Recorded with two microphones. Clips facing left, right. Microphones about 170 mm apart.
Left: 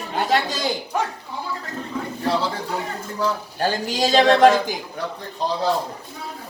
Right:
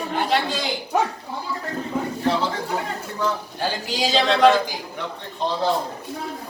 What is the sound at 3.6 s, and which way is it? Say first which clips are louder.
A woman's voice: left 4 dB; 45° left (ahead or behind).